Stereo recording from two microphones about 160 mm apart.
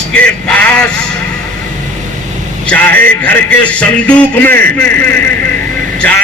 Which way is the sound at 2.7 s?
10° left (ahead or behind).